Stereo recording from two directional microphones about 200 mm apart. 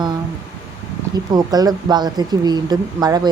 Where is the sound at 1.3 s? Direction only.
20° right (ahead or behind).